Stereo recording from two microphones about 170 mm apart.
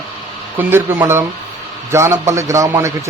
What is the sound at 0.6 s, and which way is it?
A man's voice, 10° right (ahead or behind).